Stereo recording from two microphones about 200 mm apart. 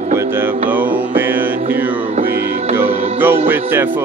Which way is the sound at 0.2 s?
10° right (ahead or behind).